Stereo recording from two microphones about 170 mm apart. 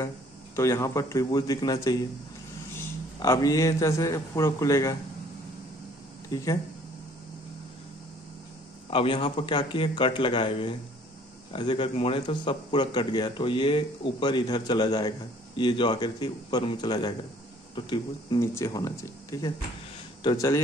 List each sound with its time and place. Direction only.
0.6 s a man's voice: 15° left (ahead or behind)
3.2 s a man's voice: 20° left (ahead or behind)
6.3 s a man's voice: 20° left (ahead or behind)
8.9 s a man's voice: 30° left (ahead or behind)